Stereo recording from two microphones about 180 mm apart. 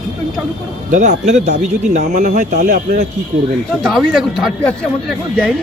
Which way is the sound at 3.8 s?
Centre (ahead or behind).